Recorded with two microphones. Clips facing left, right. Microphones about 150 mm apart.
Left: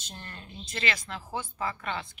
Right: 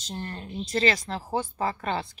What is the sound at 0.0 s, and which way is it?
Speech, 35° right (ahead or behind).